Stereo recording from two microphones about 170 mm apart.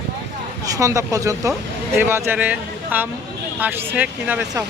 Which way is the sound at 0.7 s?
20° right (ahead or behind).